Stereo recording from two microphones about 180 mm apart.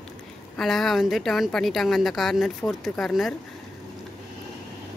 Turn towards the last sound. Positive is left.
turn(degrees=0)  # may be behind; listen again after turning